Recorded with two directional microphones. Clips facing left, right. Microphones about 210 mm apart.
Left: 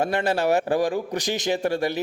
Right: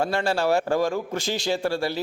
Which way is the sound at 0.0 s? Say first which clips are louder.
Left 1 dB; 20° left (ahead or behind).